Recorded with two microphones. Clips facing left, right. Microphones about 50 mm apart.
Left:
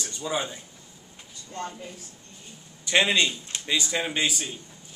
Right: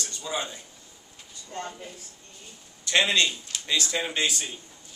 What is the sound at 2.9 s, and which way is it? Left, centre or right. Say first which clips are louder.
A man's voice: left 1 dB; centre.